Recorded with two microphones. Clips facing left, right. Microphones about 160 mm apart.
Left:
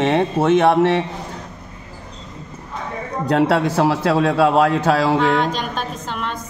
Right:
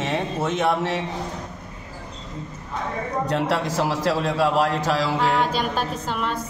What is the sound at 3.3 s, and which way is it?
A man's voice, 60° left (ahead or behind).